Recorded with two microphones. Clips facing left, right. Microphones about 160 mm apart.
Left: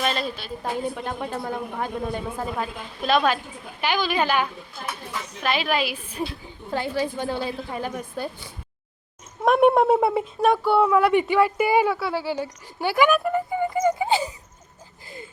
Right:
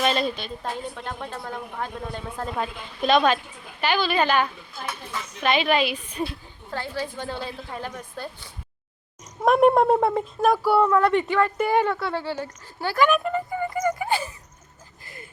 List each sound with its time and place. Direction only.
0.0 s a woman's voice: centre (ahead or behind)
9.4 s speech: centre (ahead or behind)
10.8 s a woman's voice: 10° left (ahead or behind)
15.0 s a sound: 25° left (ahead or behind)